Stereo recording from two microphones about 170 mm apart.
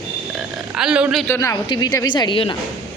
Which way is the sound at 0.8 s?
5° right (ahead or behind).